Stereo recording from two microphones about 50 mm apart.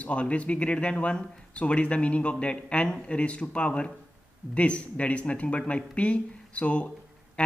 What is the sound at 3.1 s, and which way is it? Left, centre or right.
A man's voice, left.